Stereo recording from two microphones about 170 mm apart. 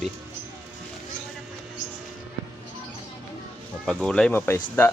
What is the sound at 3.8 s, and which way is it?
Speech, 5° left (ahead or behind).